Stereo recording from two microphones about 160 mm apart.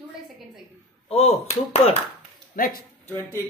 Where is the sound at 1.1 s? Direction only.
40° left (ahead or behind).